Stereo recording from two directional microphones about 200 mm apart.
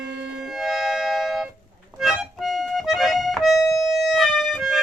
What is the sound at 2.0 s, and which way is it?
Accordion, centre (ahead or behind).